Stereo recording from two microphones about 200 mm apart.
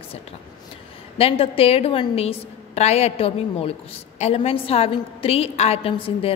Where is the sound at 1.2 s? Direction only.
30° left (ahead or behind).